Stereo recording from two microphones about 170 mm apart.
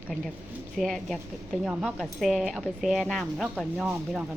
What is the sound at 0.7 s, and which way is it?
Speech, centre (ahead or behind).